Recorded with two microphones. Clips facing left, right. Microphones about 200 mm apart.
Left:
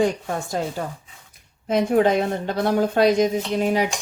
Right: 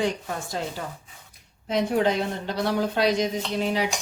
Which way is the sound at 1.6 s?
50° left (ahead or behind).